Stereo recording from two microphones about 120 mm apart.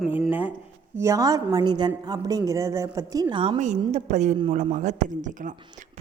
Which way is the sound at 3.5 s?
80° right.